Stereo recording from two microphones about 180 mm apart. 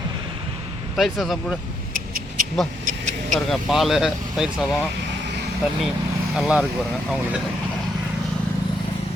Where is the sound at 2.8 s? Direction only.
45° right (ahead or behind).